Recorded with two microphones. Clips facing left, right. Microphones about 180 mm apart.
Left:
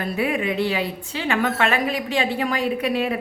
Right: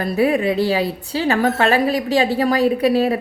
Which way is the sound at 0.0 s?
40° right (ahead or behind).